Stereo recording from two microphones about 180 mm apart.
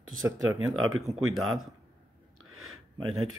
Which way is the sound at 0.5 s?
15° right (ahead or behind).